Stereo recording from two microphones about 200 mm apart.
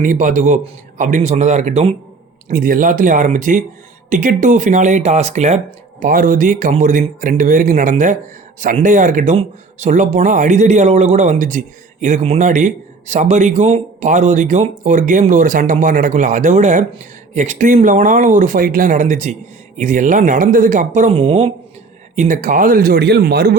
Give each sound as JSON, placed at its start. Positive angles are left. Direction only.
{"t": 0.0, "sound": "speech", "side_deg": -40}
{"t": 2.5, "sound": "speech", "side_deg": -45}